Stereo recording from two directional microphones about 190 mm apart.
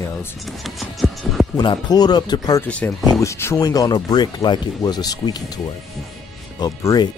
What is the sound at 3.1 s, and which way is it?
Speech, 15° left (ahead or behind).